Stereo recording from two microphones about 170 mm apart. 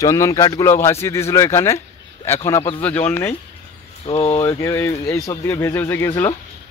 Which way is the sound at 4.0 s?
35° left (ahead or behind).